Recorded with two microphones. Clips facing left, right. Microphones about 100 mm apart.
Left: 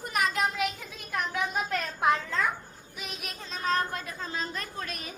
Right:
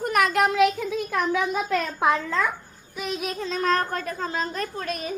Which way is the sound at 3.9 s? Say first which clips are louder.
Right 7 dB; 50° right (ahead or behind).